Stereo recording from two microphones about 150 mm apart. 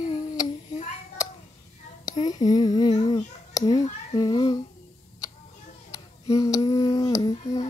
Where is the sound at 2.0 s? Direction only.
25° left (ahead or behind).